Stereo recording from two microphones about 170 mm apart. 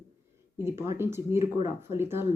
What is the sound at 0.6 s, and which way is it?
Speech, 15° right (ahead or behind).